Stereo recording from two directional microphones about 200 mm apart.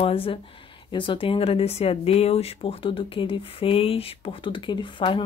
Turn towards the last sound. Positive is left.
turn(degrees=25)  # may be behind; listen again after turning